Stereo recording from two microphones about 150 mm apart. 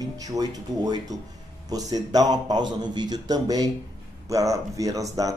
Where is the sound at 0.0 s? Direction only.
25° right (ahead or behind).